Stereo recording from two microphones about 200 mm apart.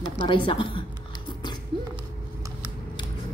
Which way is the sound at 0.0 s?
25° left (ahead or behind).